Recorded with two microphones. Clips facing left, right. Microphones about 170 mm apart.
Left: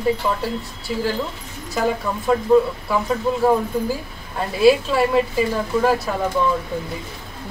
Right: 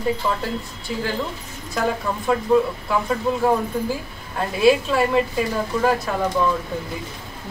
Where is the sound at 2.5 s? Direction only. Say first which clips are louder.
Left 3 dB; centre (ahead or behind).